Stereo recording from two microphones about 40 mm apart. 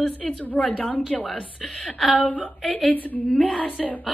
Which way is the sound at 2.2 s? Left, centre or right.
Left.